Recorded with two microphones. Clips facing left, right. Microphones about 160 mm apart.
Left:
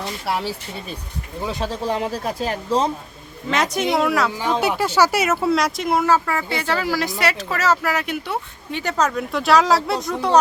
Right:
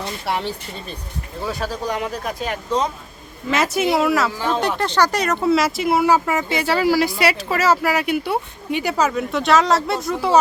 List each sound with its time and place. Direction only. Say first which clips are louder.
0.0 s speech: even; centre (ahead or behind)
1.4 s speech: even; 20° left (ahead or behind)
3.5 s speech: right 2 dB; 5° right (ahead or behind)
4.3 s speech: even; 15° left (ahead or behind); by 6.1 s 5° right (ahead or behind)
6.1 s speech: right 2 dB; 15° right (ahead or behind)